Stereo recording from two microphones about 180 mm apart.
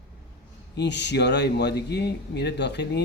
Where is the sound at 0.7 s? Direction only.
75° left (ahead or behind).